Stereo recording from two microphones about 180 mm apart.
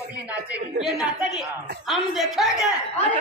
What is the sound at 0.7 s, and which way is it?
Speech, centre (ahead or behind).